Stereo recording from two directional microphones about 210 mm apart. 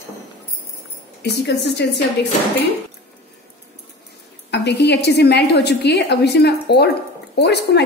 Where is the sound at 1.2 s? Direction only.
55° left (ahead or behind).